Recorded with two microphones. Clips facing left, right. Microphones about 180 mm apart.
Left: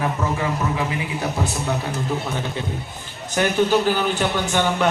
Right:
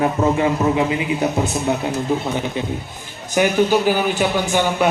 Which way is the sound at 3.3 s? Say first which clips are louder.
Right 3 dB; 10° right (ahead or behind).